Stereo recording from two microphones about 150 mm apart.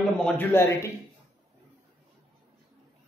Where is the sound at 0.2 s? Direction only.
15° left (ahead or behind).